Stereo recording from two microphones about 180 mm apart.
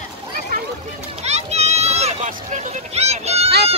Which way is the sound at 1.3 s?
35° right (ahead or behind).